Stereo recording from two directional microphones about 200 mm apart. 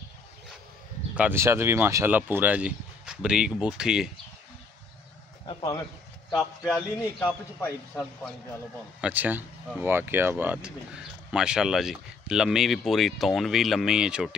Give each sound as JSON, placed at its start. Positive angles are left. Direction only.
{"t": 1.1, "sound": "speech", "side_deg": -10}
{"t": 5.5, "sound": "speech", "side_deg": 20}
{"t": 6.7, "sound": "speech", "side_deg": 5}
{"t": 9.0, "sound": "speech", "side_deg": -10}